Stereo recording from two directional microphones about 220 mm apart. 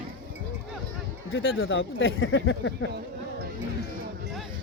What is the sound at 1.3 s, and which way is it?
Speech, 60° left (ahead or behind).